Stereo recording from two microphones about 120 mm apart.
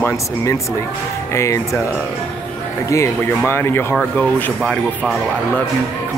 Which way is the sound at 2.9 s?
20° left (ahead or behind).